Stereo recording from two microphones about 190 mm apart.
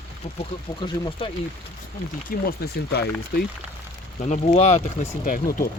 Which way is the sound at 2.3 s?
50° left (ahead or behind).